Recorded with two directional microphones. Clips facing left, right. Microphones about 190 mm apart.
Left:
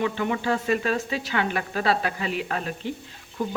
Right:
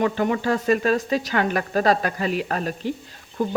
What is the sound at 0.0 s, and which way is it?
A woman's voice, 45° right (ahead or behind).